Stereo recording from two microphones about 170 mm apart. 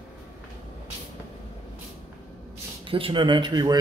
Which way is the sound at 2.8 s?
30° right (ahead or behind).